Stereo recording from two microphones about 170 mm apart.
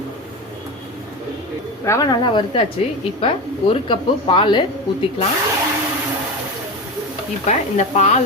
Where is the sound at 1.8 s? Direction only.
20° left (ahead or behind).